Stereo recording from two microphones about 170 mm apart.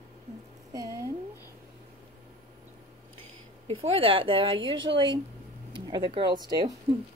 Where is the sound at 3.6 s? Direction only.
35° right (ahead or behind).